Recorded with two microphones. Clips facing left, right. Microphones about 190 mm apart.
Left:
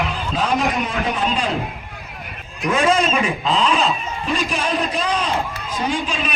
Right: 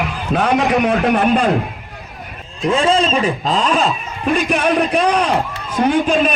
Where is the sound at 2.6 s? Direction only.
30° right (ahead or behind).